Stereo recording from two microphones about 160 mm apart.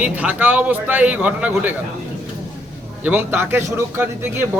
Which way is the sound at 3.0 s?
10° right (ahead or behind).